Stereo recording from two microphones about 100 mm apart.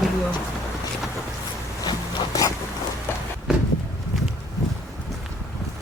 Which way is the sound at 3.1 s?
20° left (ahead or behind).